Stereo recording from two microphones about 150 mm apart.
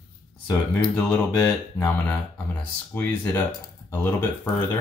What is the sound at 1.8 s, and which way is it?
Speech, 15° left (ahead or behind).